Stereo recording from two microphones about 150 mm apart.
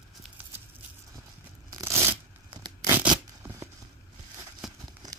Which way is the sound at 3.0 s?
20° right (ahead or behind).